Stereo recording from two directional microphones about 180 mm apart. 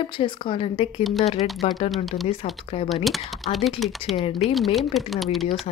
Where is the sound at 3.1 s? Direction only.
Centre (ahead or behind).